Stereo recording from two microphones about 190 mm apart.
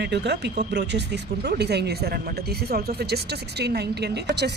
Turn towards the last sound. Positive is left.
turn(degrees=-60)  # may be behind; listen again after turning